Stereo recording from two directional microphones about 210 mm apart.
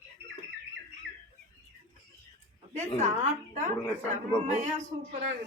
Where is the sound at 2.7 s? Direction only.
35° right (ahead or behind).